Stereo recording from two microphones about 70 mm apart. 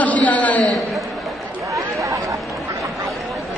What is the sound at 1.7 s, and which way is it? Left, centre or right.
Chatter, right.